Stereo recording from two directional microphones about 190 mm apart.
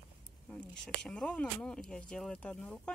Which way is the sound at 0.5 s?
5° left (ahead or behind).